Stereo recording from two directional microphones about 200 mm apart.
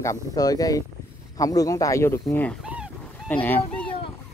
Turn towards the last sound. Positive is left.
turn(degrees=5)  # may be behind; listen again after turning